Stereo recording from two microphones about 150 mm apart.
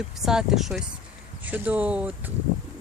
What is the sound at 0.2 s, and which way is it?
Speech, 5° right (ahead or behind).